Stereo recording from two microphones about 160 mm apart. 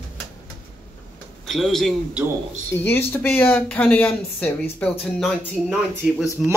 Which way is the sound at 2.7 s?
15° left (ahead or behind).